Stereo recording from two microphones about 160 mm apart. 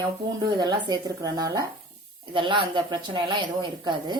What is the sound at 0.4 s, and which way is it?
Speech, 25° right (ahead or behind).